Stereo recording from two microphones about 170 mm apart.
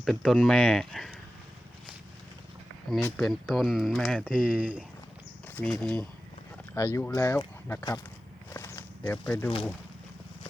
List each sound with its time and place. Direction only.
0.0 s speech: centre (ahead or behind)
2.9 s speech: centre (ahead or behind)
5.5 s speech: 5° left (ahead or behind)
6.7 s speech: 15° left (ahead or behind)
8.5 s walk: 15° left (ahead or behind)
9.2 s speech: 5° left (ahead or behind)